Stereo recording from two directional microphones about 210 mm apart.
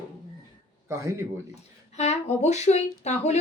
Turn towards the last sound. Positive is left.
turn(degrees=30)  # may be behind; listen again after turning